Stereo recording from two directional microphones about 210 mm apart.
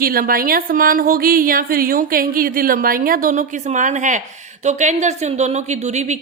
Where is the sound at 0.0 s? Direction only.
45° right (ahead or behind).